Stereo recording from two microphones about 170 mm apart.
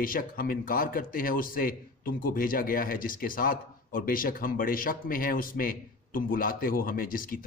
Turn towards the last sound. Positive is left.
turn(degrees=55)  # may be behind; listen again after turning